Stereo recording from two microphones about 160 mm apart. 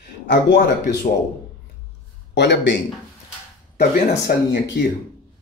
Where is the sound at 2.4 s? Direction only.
90° left.